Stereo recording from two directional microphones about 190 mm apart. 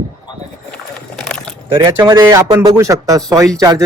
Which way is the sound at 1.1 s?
5° left (ahead or behind).